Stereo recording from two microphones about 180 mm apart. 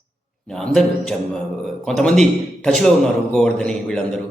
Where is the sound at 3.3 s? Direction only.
5° left (ahead or behind).